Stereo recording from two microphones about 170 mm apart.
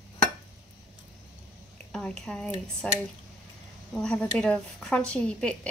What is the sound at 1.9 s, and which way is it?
Speech, 5° left (ahead or behind).